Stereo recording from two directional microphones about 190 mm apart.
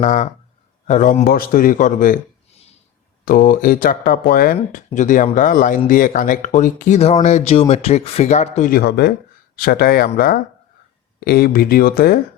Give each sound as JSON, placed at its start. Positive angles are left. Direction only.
{"t": 0.0, "sound": "a man's voice", "side_deg": 40}